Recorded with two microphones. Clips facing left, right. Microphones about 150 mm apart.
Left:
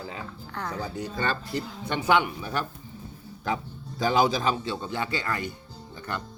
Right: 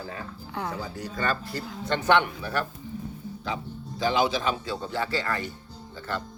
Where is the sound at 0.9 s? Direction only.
25° left (ahead or behind).